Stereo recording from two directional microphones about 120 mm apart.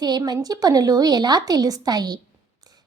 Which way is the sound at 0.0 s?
35° right (ahead or behind).